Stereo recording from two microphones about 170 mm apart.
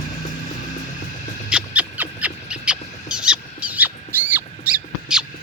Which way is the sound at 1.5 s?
5° right (ahead or behind).